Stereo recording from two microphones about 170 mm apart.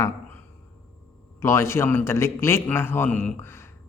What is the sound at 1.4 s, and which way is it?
Speech, 15° left (ahead or behind).